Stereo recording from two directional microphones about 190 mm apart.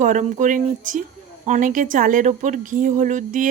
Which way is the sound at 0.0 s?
40° right (ahead or behind).